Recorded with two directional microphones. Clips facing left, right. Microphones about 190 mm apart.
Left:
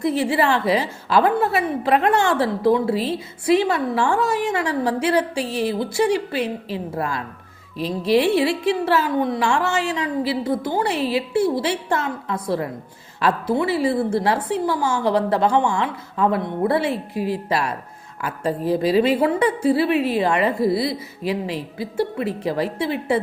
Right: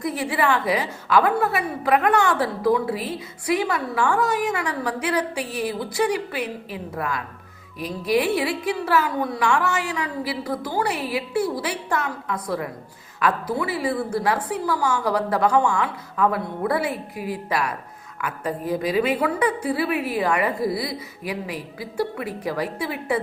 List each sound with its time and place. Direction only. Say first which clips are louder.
0.0 s a woman's voice: left 4 dB; 30° left (ahead or behind)